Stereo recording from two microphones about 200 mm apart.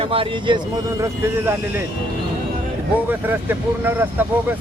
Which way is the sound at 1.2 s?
10° right (ahead or behind).